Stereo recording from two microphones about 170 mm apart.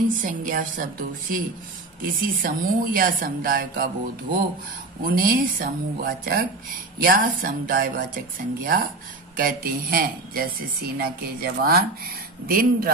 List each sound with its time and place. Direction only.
0.2 s a woman's voice: 55° right (ahead or behind)